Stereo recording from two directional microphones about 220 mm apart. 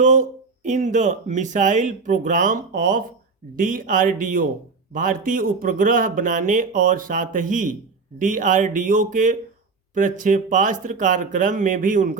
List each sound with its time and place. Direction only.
0.0 s speech: 35° right (ahead or behind)